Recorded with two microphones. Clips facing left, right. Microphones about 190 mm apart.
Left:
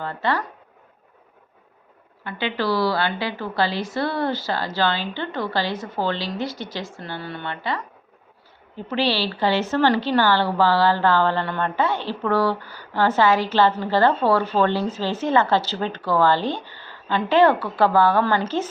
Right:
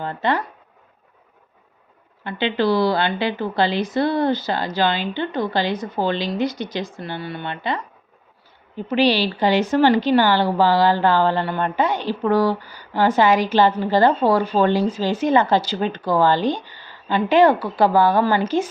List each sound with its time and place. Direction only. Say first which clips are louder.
0.0 s speech: right 2 dB; 20° right (ahead or behind)
2.2 s a woman's voice: right 4 dB; 20° right (ahead or behind)
8.9 s a woman's voice: right 5 dB; 15° right (ahead or behind)